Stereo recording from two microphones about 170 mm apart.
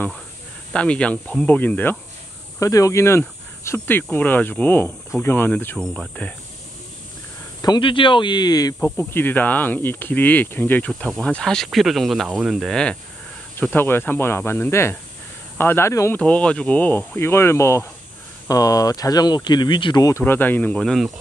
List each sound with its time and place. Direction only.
0.7 s speech: 5° left (ahead or behind)
7.6 s speech: 25° left (ahead or behind)
8.7 s speech: 10° left (ahead or behind)